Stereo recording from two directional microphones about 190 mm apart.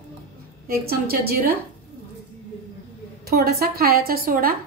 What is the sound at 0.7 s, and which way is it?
Speech, 50° right (ahead or behind).